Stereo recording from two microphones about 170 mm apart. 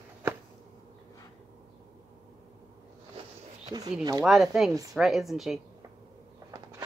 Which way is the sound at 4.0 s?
25° right (ahead or behind).